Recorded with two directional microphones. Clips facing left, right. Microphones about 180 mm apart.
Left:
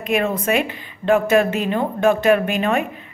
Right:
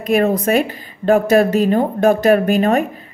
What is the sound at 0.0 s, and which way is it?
A woman's voice, 40° right (ahead or behind).